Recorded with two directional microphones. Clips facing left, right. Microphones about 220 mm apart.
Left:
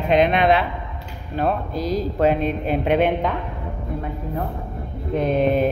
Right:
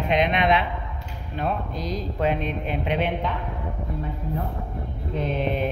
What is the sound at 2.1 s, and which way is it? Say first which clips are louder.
A woman's voice: left 5 dB; 45° left (ahead or behind).